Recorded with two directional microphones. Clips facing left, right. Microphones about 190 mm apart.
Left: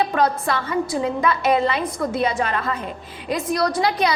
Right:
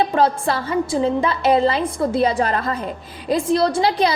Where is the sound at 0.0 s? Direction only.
30° right (ahead or behind).